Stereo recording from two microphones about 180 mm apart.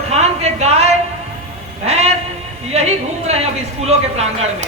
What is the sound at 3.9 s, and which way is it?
Speech, 35° right (ahead or behind).